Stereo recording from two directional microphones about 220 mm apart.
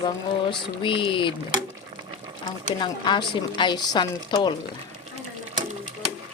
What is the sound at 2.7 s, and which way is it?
Speech, 20° left (ahead or behind).